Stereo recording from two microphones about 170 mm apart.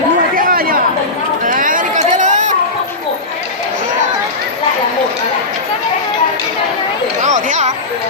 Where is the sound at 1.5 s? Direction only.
50° right (ahead or behind).